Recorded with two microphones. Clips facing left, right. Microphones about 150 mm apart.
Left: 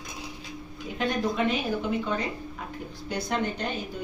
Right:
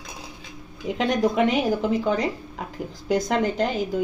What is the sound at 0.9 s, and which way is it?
Speech, 90° right.